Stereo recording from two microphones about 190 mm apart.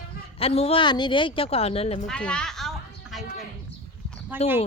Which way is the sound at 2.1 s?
5° left (ahead or behind).